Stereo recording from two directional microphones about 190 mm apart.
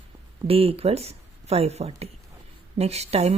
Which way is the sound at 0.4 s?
30° right (ahead or behind).